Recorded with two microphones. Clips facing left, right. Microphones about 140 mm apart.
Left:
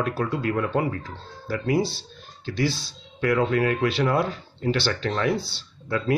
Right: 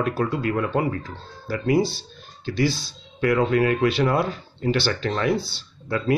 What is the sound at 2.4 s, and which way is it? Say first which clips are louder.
Speech: right 3 dB; 5° right (ahead or behind).